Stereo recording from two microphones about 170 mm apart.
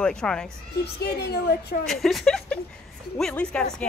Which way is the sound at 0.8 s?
75° left (ahead or behind).